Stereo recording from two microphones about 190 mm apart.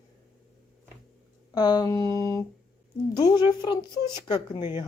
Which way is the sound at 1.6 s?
20° left (ahead or behind).